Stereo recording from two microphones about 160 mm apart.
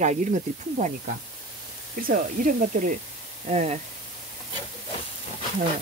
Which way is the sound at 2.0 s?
60° right (ahead or behind).